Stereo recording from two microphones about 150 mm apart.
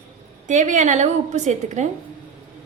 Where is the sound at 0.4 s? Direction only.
55° right (ahead or behind).